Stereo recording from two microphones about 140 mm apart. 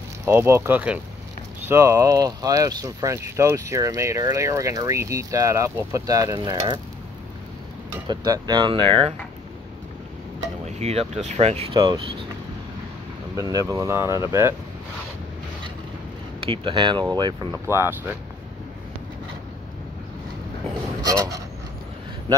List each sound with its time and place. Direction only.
0.2 s speech: 20° right (ahead or behind)
8.1 s speech: 30° right (ahead or behind)
10.8 s speech: 50° right (ahead or behind)
11.7 s speech: 30° right (ahead or behind)
13.4 s speech: 25° right (ahead or behind)
16.3 s speech: 40° right (ahead or behind)
17.6 s speech: 15° right (ahead or behind)
21.0 s speech: 25° right (ahead or behind)